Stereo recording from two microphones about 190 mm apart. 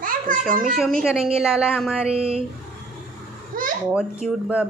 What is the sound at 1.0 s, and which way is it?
Speech, 5° right (ahead or behind).